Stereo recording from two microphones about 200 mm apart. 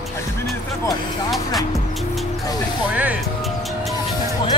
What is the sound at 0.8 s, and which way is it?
Speech, centre (ahead or behind).